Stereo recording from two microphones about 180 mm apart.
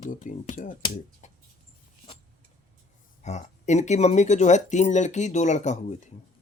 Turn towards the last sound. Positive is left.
turn(degrees=40)  # may be behind; listen again after turning